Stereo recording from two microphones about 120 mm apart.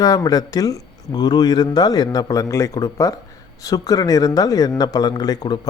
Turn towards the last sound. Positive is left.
turn(degrees=35)  # may be behind; listen again after turning